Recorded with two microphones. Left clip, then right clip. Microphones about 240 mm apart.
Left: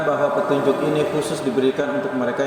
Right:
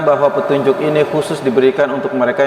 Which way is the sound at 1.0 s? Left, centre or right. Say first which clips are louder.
Right 6 dB; right.